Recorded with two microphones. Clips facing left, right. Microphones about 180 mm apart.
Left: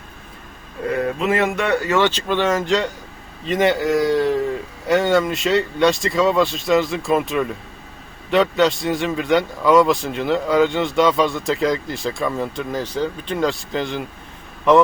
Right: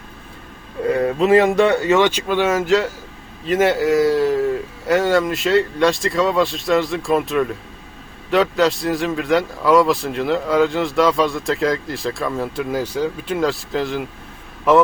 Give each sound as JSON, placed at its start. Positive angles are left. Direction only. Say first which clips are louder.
{"t": 0.9, "sound": "speech", "louder": "right 5 dB", "side_deg": -35}